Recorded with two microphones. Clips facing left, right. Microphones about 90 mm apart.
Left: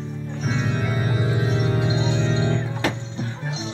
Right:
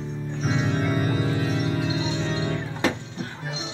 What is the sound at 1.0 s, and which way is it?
Music, 15° left (ahead or behind).